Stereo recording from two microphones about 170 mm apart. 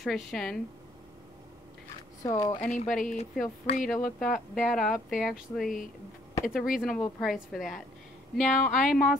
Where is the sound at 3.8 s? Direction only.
5° left (ahead or behind).